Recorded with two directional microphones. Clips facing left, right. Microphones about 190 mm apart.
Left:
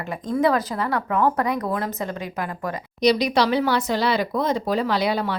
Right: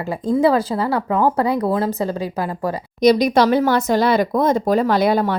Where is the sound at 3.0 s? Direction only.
45° right (ahead or behind).